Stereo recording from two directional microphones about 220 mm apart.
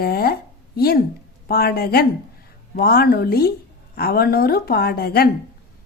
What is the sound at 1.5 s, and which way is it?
A woman's voice, 45° left (ahead or behind).